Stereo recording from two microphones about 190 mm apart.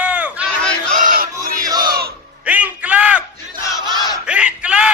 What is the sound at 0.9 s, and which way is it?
Music, 45° right (ahead or behind).